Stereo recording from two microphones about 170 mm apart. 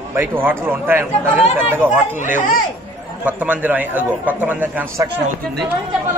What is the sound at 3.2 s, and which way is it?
A man's voice, 10° right (ahead or behind).